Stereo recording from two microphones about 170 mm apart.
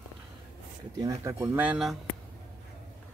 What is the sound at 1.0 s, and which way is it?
Speech, 20° right (ahead or behind).